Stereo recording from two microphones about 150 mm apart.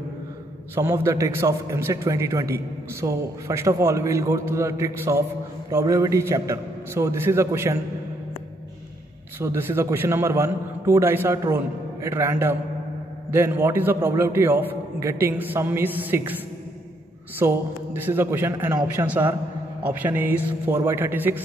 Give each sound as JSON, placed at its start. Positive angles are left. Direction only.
{"t": 0.7, "sound": "a man's voice", "side_deg": -15}
{"t": 9.4, "sound": "a man's voice", "side_deg": -15}
{"t": 17.4, "sound": "a man's voice", "side_deg": -15}